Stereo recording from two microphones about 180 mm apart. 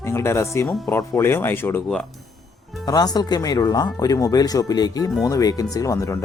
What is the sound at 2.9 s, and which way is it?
Speech, 20° left (ahead or behind).